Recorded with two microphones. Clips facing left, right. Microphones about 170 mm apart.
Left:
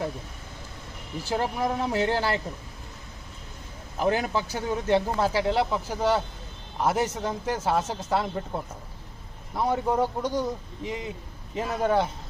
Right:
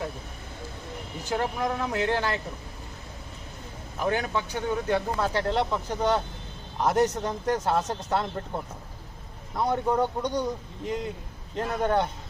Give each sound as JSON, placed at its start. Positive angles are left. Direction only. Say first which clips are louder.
{"t": 1.3, "sound": "speech", "louder": "left 1 dB", "side_deg": 30}
{"t": 4.0, "sound": "speech", "louder": "left 2 dB", "side_deg": 30}
{"t": 5.3, "sound": "a man's voice", "louder": "left 2 dB", "side_deg": 5}